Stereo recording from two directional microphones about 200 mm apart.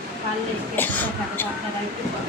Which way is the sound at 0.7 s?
10° left (ahead or behind).